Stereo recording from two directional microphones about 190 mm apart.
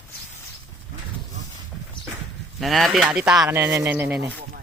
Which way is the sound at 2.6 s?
Centre (ahead or behind).